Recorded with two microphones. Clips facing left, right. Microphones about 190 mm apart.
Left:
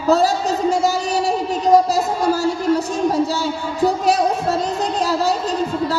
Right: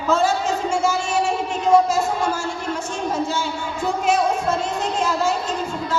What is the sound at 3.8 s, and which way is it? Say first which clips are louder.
Music: left 3 dB; 35° left (ahead or behind).